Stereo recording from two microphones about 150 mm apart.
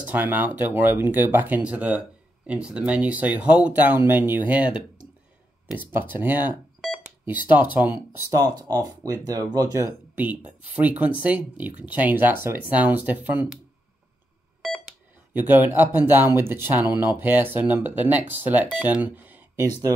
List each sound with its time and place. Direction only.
0.0 s speech: 10° right (ahead or behind)
8.3 s speech: 25° right (ahead or behind)
15.3 s speech: 10° right (ahead or behind)